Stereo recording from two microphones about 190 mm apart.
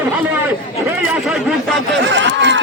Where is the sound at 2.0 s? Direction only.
65° right (ahead or behind).